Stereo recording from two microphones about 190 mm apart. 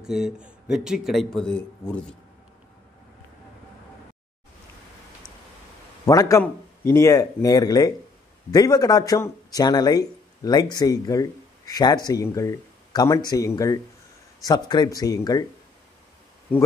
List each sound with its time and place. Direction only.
0.0 s speech: 5° right (ahead or behind)
6.0 s speech: 15° left (ahead or behind)